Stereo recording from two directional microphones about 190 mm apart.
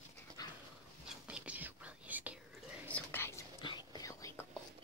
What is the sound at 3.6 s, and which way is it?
Whispering, 25° left (ahead or behind).